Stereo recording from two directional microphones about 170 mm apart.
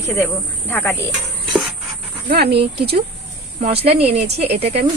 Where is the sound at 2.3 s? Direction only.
75° right (ahead or behind).